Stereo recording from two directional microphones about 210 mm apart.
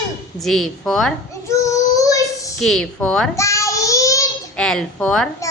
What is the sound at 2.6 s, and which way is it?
Speech, centre (ahead or behind).